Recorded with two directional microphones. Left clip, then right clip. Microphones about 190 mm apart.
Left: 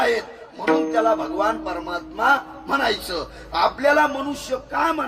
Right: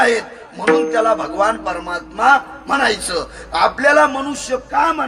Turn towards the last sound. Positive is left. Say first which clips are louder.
# right 6 dB
turn(degrees=0)  # may be behind; listen again after turning